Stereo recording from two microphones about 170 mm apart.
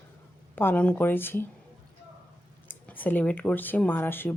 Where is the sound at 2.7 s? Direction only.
10° left (ahead or behind).